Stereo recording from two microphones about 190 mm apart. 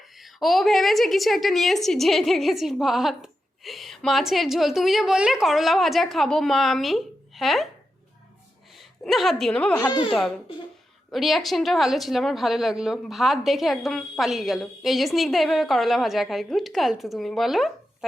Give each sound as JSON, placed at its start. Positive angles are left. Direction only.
{"t": 0.0, "sound": "a woman's voice", "side_deg": 0}
{"t": 8.7, "sound": "a woman's voice", "side_deg": 0}
{"t": 9.8, "sound": "speech", "side_deg": 20}
{"t": 10.1, "sound": "a woman's voice", "side_deg": 0}